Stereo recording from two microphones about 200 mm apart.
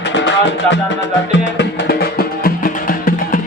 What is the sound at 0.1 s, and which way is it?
Music, 65° left (ahead or behind).